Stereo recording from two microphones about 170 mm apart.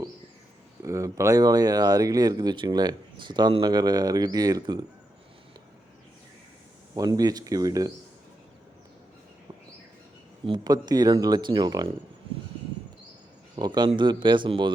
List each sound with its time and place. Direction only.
0.8 s speech: 15° right (ahead or behind)
6.9 s speech: 20° right (ahead or behind)
10.4 s speech: 25° right (ahead or behind)
13.6 s speech: 25° right (ahead or behind)